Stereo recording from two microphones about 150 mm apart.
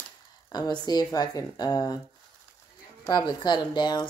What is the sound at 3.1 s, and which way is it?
Speech, 30° left (ahead or behind).